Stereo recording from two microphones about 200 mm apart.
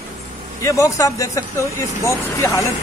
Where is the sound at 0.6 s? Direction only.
15° left (ahead or behind).